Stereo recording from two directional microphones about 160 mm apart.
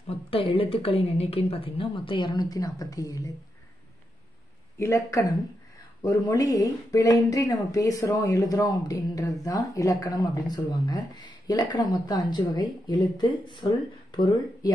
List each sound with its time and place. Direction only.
0.0 s a woman's voice: 35° left (ahead or behind)
4.7 s speech: 20° left (ahead or behind)
6.2 s speech: 20° left (ahead or behind)